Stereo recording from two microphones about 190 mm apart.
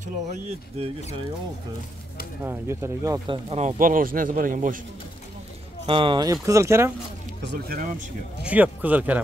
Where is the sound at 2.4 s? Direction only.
15° right (ahead or behind).